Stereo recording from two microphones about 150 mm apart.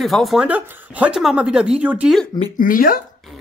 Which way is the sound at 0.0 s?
Centre (ahead or behind).